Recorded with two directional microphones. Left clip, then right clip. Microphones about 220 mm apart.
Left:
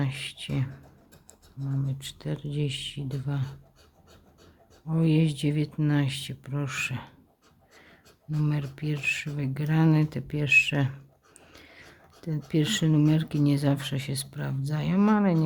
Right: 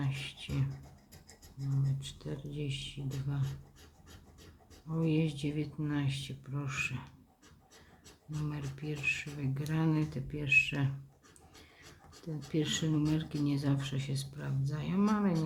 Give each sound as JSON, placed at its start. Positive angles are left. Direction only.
{"t": 0.0, "sound": "speech", "side_deg": 45}
{"t": 2.0, "sound": "speech", "side_deg": 45}
{"t": 4.9, "sound": "speech", "side_deg": 45}
{"t": 8.4, "sound": "speech", "side_deg": 45}
{"t": 12.2, "sound": "speech", "side_deg": 45}